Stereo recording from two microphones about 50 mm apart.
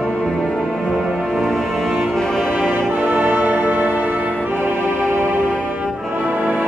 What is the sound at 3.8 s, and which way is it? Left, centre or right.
Music, left.